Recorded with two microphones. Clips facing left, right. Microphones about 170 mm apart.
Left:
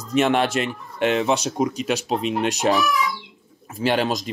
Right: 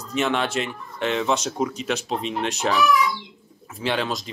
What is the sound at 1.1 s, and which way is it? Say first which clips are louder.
Speech: even; 15° left (ahead or behind).